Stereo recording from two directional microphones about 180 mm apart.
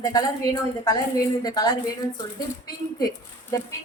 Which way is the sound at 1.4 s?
20° left (ahead or behind).